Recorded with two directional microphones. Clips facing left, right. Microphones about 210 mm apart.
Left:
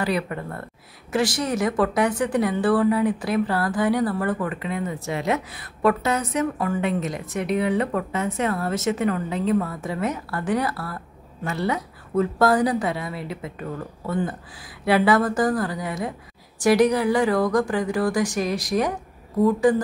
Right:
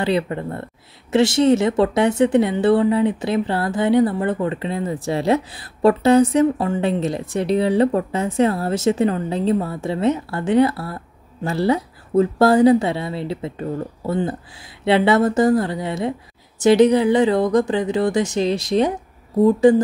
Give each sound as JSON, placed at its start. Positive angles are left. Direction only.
{"t": 0.0, "sound": "speech", "side_deg": -25}